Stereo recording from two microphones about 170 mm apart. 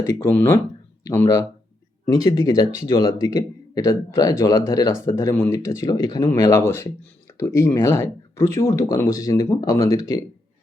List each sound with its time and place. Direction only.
0.0 s speech: 15° left (ahead or behind)